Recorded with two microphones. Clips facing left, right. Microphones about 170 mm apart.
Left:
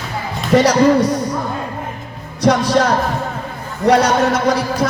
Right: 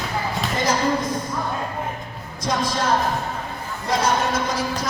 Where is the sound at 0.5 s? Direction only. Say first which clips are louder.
Left 12 dB; 75° left (ahead or behind).